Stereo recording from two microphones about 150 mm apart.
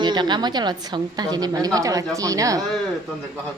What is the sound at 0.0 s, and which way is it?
A woman's voice, 30° right (ahead or behind).